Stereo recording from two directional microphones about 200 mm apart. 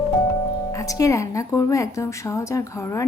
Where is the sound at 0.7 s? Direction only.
15° left (ahead or behind).